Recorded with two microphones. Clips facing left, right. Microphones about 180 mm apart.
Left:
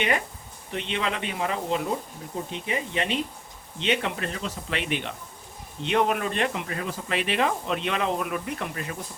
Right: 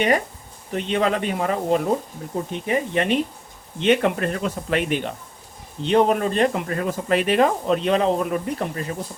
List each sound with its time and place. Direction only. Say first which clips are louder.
0.7 s speech: right 8 dB; 45° right (ahead or behind)